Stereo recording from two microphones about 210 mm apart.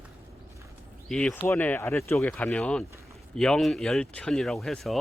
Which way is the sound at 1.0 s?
5° left (ahead or behind).